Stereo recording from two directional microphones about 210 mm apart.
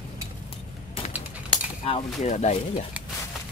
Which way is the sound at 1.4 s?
25° left (ahead or behind).